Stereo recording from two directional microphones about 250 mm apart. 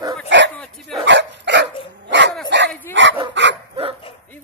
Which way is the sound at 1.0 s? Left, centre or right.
Right.